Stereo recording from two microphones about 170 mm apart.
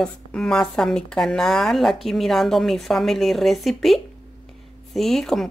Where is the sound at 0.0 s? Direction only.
5° left (ahead or behind).